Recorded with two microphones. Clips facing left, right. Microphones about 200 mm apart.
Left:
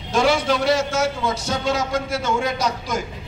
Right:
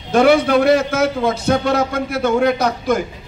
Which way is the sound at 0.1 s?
60° right (ahead or behind).